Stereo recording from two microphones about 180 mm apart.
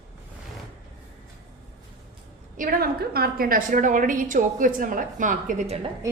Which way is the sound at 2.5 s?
50° right (ahead or behind).